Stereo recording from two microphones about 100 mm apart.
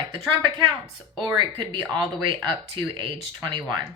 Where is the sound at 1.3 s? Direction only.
50° right (ahead or behind).